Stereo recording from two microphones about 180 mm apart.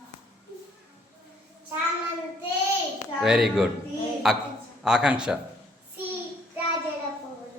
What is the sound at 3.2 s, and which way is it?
A man's voice, centre (ahead or behind).